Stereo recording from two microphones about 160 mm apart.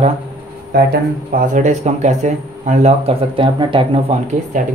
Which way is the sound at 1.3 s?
55° right (ahead or behind).